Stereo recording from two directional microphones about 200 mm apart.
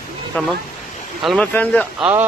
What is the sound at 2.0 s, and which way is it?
Speech, 10° right (ahead or behind).